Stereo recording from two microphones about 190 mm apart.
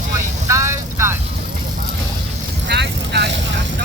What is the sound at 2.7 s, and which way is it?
Vehicle, 60° right (ahead or behind).